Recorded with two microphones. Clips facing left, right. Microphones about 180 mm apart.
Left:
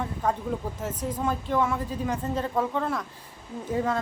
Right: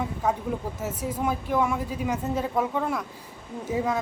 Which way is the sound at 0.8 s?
10° right (ahead or behind).